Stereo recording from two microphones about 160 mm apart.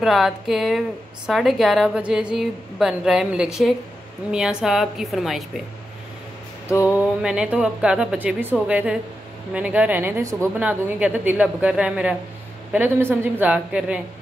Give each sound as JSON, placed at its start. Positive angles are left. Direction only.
{"t": 0.0, "sound": "speech", "side_deg": 0}
{"t": 7.2, "sound": "a woman's voice", "side_deg": -5}